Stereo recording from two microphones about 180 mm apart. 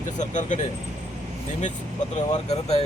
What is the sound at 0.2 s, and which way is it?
Speech, 45° left (ahead or behind).